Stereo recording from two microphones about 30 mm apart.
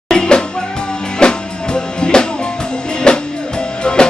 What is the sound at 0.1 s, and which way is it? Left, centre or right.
Music, left.